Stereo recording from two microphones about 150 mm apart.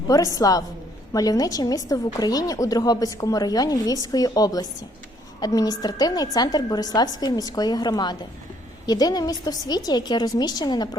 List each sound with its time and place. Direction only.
0.3 s a woman's voice: 25° left (ahead or behind)